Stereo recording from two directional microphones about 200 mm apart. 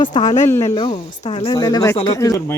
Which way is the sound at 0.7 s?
25° left (ahead or behind).